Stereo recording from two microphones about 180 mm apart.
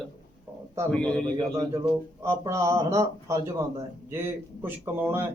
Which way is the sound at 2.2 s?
15° right (ahead or behind).